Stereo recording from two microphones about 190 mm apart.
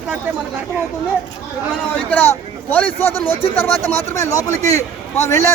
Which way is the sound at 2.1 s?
10° left (ahead or behind).